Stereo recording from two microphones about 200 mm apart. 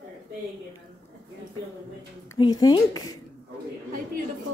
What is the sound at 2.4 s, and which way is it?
Speech, 20° left (ahead or behind).